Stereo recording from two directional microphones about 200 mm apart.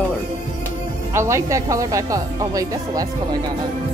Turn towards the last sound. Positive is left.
turn(degrees=-15)  # may be behind; listen again after turning